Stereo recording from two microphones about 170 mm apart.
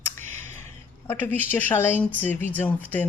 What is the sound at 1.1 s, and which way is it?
Speech, 15° left (ahead or behind).